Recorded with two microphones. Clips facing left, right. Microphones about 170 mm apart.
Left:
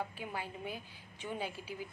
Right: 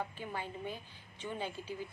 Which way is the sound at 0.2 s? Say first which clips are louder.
Right 1 dB; 10° left (ahead or behind).